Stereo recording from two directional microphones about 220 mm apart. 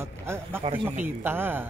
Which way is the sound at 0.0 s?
10° right (ahead or behind).